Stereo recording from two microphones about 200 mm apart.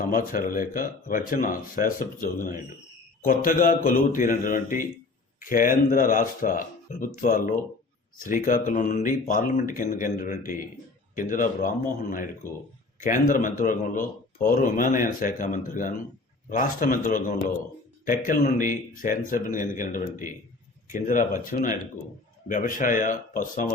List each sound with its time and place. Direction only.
0.0 s speech: 45° left (ahead or behind)
13.0 s speech: 40° left (ahead or behind)